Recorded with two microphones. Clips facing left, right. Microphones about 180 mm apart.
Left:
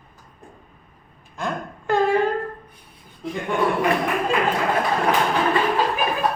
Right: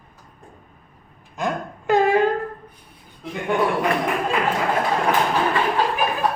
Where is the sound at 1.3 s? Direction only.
15° right (ahead or behind).